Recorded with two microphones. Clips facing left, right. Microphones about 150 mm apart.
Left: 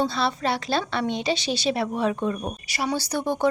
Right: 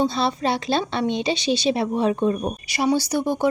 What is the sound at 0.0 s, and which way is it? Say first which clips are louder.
A woman's voice: right 3 dB; 20° right (ahead or behind).